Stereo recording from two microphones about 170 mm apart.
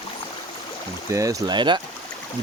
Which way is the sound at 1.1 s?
20° right (ahead or behind).